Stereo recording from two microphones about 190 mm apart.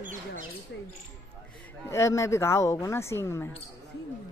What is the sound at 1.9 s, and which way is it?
Speech, 15° left (ahead or behind).